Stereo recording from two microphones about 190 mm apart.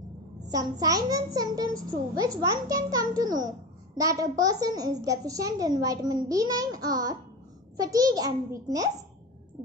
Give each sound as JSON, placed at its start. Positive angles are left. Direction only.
{"t": 0.5, "sound": "a child's voice", "side_deg": -20}